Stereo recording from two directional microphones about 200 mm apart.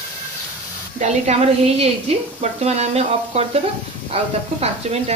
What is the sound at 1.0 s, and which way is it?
A woman's voice, 30° right (ahead or behind).